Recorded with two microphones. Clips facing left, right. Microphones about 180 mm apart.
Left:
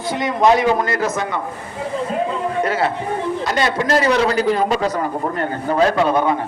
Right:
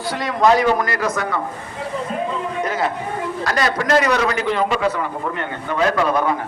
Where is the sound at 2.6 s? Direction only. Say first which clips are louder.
Left 1 dB; 30° left (ahead or behind).